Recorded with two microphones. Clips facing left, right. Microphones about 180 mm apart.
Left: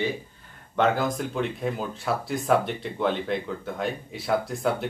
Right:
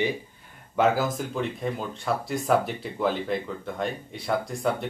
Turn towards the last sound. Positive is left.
turn(degrees=0)  # may be behind; listen again after turning